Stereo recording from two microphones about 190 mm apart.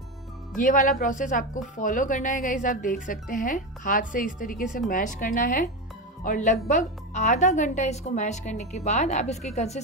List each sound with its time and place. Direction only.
0.6 s a woman's voice: 45° left (ahead or behind)